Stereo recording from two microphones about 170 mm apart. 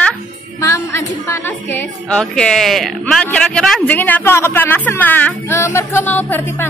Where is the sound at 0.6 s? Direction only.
15° left (ahead or behind).